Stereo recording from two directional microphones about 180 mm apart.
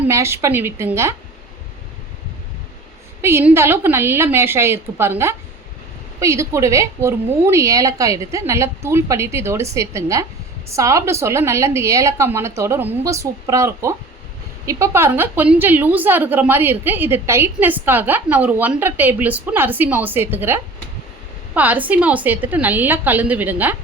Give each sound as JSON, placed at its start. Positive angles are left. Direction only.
{"t": 0.1, "sound": "a woman's voice", "side_deg": -15}
{"t": 3.2, "sound": "a woman's voice", "side_deg": -15}